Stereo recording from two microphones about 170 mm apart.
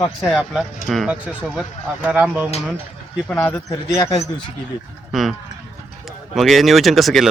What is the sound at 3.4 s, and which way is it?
Speech, 20° left (ahead or behind).